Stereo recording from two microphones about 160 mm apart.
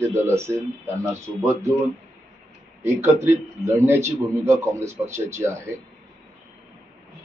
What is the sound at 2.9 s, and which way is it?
A man's voice, 15° right (ahead or behind).